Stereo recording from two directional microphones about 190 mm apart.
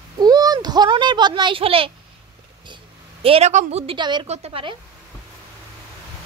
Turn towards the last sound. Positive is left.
turn(degrees=-30)  # may be behind; listen again after turning